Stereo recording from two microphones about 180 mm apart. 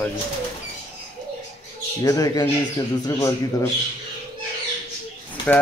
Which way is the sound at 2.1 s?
20° left (ahead or behind).